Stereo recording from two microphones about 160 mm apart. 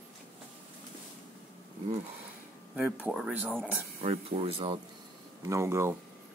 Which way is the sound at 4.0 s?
40° right (ahead or behind).